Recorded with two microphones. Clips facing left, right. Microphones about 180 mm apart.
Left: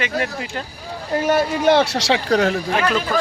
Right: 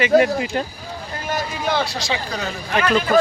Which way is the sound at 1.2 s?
70° left (ahead or behind).